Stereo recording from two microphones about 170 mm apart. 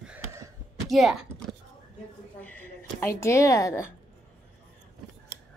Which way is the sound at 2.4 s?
10° left (ahead or behind).